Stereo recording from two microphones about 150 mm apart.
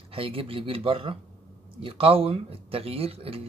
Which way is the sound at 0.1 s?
40° right (ahead or behind).